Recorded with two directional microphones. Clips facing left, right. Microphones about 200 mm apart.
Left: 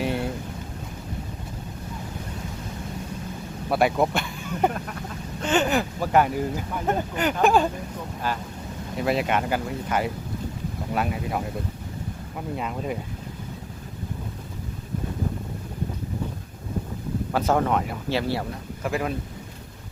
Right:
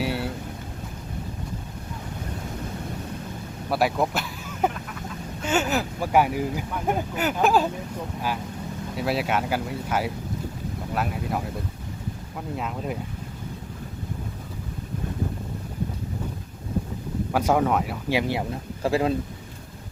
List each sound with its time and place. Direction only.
0.0 s boat: 5° right (ahead or behind)
3.7 s speech: centre (ahead or behind)
4.1 s a sound: centre (ahead or behind)
5.4 s speech: 5° right (ahead or behind)
9.0 s speech: 5° right (ahead or behind)
12.5 s speech: centre (ahead or behind)
17.3 s speech: 10° right (ahead or behind)
18.8 s speech: 30° right (ahead or behind)